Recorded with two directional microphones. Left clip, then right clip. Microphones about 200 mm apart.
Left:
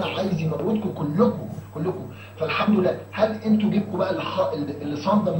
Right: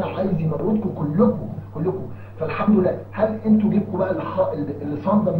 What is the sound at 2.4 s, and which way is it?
Speech, 15° left (ahead or behind).